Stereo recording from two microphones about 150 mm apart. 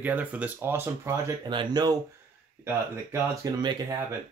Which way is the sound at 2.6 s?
15° right (ahead or behind).